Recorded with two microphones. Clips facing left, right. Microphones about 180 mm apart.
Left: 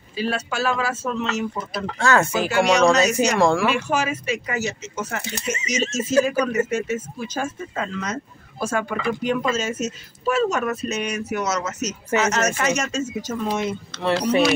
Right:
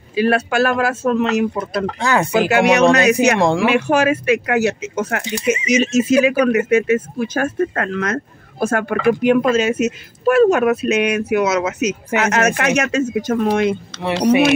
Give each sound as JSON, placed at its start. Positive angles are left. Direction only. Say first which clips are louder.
{"t": 0.1, "sound": "speech", "louder": "right 9 dB", "side_deg": -65}
{"t": 2.0, "sound": "speech", "louder": "even", "side_deg": -15}
{"t": 2.3, "sound": "speech", "louder": "right 5 dB", "side_deg": -65}
{"t": 3.3, "sound": "speech", "louder": "right 2 dB", "side_deg": -20}
{"t": 3.7, "sound": "speech", "louder": "right 8 dB", "side_deg": -60}
{"t": 5.4, "sound": "speech", "louder": "right 9 dB", "side_deg": -10}
{"t": 5.9, "sound": "speech", "louder": "right 3 dB", "side_deg": -60}